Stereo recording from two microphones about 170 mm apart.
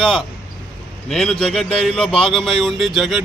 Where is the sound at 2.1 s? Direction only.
30° left (ahead or behind).